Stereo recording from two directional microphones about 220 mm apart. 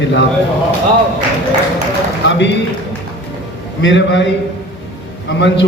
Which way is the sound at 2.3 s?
55° left (ahead or behind).